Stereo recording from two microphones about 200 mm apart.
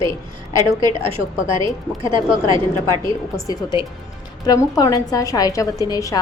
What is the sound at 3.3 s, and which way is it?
A woman's voice, 20° left (ahead or behind).